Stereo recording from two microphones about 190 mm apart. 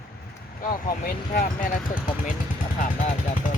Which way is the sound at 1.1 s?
50° left (ahead or behind).